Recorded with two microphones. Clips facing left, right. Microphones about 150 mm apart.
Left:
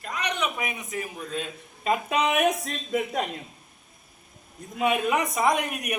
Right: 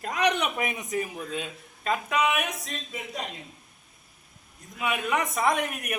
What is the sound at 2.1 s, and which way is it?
Speech, 35° left (ahead or behind).